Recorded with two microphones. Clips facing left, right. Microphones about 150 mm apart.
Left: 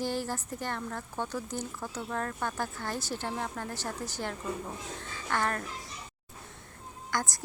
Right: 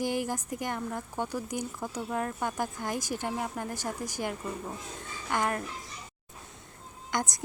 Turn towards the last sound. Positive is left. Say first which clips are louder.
# right 2 dB
turn(degrees=-20)  # may be behind; listen again after turning